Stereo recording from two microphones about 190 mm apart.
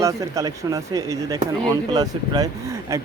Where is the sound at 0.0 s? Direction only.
15° right (ahead or behind).